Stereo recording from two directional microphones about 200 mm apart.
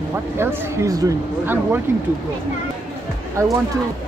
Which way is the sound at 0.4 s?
15° right (ahead or behind).